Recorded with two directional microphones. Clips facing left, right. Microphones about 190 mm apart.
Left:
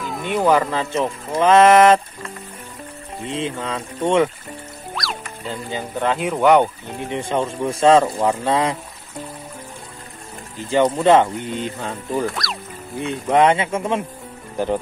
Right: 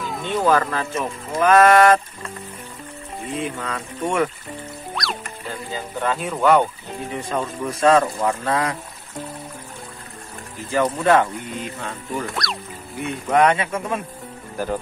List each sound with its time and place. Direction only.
0.0 s a sound: centre (ahead or behind)
0.3 s speech: 15° left (ahead or behind)
3.3 s speech: 25° left (ahead or behind)
5.7 s speech: 20° left (ahead or behind)
10.6 s speech: 25° left (ahead or behind)
12.4 s speech: centre (ahead or behind)
13.0 s speech: 25° left (ahead or behind)